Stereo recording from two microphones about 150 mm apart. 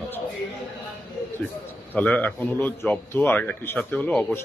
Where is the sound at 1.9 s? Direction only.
10° left (ahead or behind).